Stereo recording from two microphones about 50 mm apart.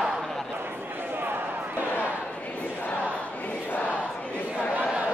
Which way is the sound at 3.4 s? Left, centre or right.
Left.